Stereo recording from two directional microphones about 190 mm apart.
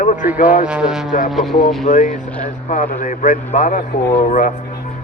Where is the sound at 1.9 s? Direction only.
40° left (ahead or behind).